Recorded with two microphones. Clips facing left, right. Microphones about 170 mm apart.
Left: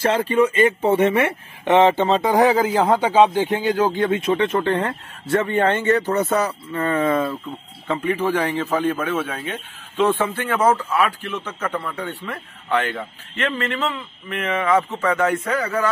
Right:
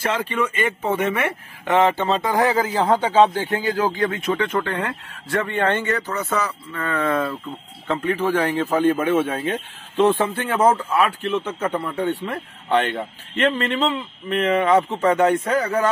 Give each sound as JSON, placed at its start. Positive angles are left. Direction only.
{"t": 0.0, "sound": "speech", "side_deg": 35}
{"t": 8.0, "sound": "a man's voice", "side_deg": 0}
{"t": 9.0, "sound": "speech", "side_deg": -20}
{"t": 9.3, "sound": "speech", "side_deg": -35}